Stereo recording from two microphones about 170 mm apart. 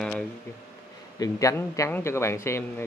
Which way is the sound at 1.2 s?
20° left (ahead or behind).